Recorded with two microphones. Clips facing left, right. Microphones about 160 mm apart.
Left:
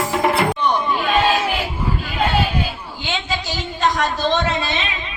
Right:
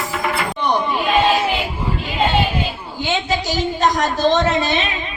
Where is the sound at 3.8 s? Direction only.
45° right (ahead or behind).